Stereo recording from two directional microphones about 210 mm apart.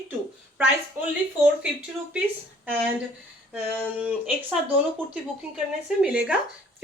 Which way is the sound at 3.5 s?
5° right (ahead or behind).